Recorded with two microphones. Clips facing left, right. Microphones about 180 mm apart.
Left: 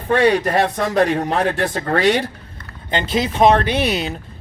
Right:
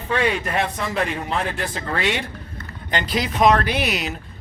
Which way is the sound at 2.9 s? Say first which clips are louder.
Left 4 dB; 25° left (ahead or behind).